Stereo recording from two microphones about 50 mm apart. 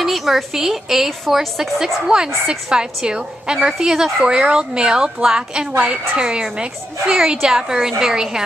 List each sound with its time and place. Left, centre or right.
0.0 s a woman's voice: centre